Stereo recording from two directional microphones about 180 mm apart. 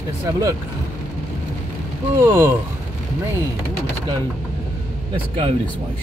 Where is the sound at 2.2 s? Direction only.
15° right (ahead or behind).